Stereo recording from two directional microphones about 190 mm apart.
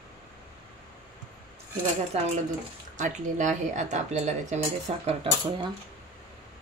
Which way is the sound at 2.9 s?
40° right (ahead or behind).